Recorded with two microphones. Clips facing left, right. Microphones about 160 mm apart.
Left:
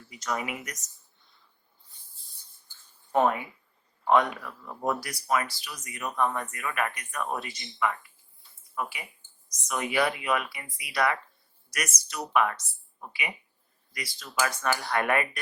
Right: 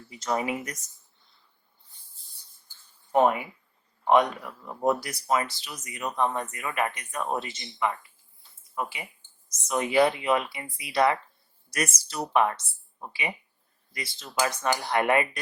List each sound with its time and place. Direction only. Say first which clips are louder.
0.1 s speech: right 4 dB; 30° right (ahead or behind)
3.1 s speech: right 2 dB; 15° right (ahead or behind)